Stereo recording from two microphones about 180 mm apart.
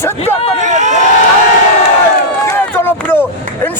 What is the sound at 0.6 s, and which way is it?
Run, 40° right (ahead or behind).